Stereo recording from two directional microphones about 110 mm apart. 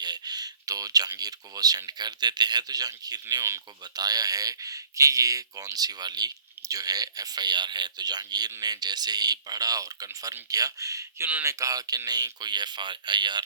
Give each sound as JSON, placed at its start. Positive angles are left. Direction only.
{"t": 0.0, "sound": "speech", "side_deg": -40}